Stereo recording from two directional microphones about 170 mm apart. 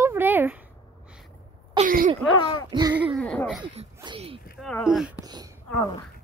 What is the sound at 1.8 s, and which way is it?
Throat clearing, 50° right (ahead or behind).